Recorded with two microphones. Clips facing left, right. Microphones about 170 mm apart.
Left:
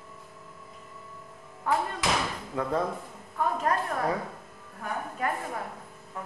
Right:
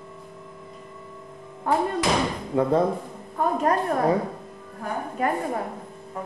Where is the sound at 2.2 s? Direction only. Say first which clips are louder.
Right 8 dB; 25° right (ahead or behind).